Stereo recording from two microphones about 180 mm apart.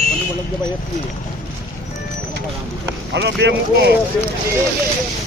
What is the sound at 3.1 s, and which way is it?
Speech, 75° right (ahead or behind).